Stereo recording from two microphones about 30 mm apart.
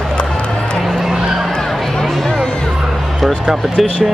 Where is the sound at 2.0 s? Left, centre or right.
Centre.